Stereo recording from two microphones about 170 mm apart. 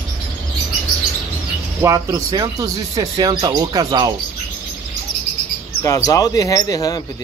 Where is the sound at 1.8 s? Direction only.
20° right (ahead or behind).